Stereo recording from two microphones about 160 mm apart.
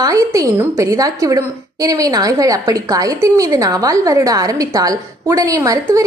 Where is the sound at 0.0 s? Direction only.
20° right (ahead or behind).